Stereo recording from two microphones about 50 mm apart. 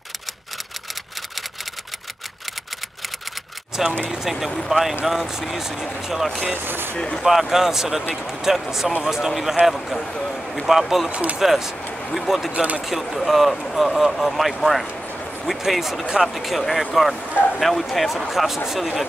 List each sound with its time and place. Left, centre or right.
3.7 s speech: centre
6.5 s speech: right
7.0 s speech: centre
7.2 s speech: centre
9.9 s speech: centre
10.7 s speech: centre
11.1 s speech: right
11.3 s speech: centre
12.5 s speech: right
13.1 s speech: centre
16.3 s speech: centre